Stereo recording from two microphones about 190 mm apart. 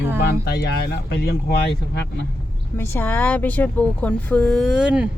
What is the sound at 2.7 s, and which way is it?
Speech, 10° left (ahead or behind).